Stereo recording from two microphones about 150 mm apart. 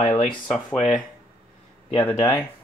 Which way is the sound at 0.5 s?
Centre (ahead or behind).